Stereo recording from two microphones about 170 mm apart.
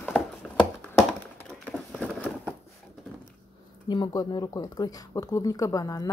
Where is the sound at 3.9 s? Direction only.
25° left (ahead or behind).